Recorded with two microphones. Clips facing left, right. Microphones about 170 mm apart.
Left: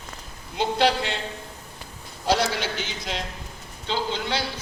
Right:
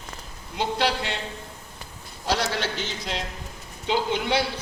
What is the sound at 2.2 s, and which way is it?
A man's voice, 10° left (ahead or behind).